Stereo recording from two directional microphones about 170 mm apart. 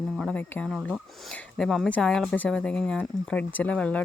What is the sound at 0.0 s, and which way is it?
Speech, 5° left (ahead or behind).